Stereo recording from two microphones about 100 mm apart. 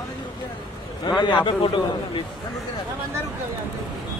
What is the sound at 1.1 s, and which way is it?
Speech, 45° left (ahead or behind).